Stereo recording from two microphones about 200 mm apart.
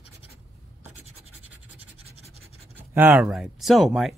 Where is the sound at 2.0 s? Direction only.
30° right (ahead or behind).